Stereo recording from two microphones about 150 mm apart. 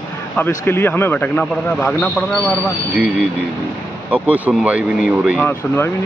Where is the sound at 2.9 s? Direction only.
5° right (ahead or behind).